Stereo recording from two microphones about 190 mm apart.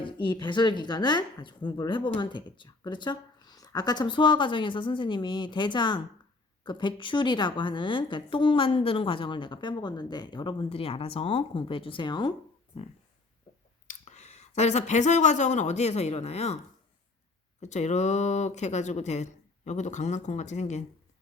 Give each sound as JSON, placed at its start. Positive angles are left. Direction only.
{"t": 0.0, "sound": "a woman's voice", "side_deg": 25}
{"t": 13.8, "sound": "speech", "side_deg": 35}
{"t": 17.6, "sound": "speech", "side_deg": 40}